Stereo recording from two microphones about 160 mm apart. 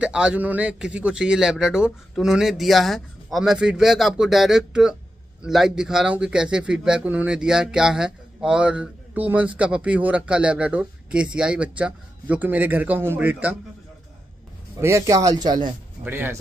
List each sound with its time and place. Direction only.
0.0 s a man's voice: 5° right (ahead or behind)
14.8 s speech: 20° right (ahead or behind)
16.0 s a man's voice: 15° right (ahead or behind)